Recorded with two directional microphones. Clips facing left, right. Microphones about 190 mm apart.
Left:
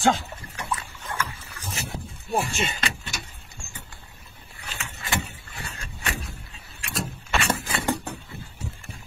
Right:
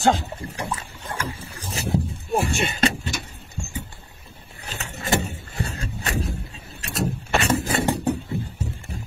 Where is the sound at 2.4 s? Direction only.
35° right (ahead or behind).